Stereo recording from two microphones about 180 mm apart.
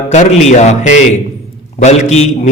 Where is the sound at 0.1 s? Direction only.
40° left (ahead or behind).